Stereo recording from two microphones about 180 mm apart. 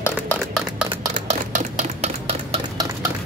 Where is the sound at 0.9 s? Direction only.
35° right (ahead or behind).